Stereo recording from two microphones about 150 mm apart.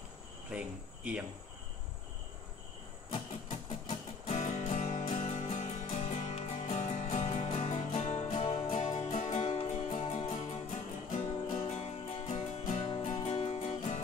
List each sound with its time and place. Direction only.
0.5 s cricket: 5° right (ahead or behind)
3.1 s music: 35° left (ahead or behind)
3.9 s music: 45° left (ahead or behind)